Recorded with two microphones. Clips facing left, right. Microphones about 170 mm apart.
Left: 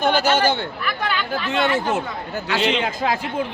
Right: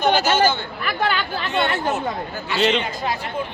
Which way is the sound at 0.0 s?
60° left (ahead or behind).